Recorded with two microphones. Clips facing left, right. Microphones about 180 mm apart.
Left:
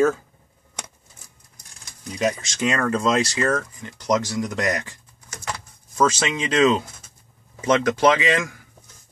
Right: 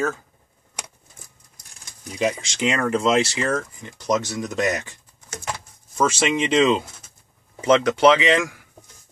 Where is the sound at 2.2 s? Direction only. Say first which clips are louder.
Even; 10° right (ahead or behind).